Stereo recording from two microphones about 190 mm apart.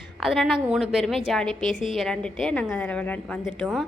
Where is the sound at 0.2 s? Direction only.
Centre (ahead or behind).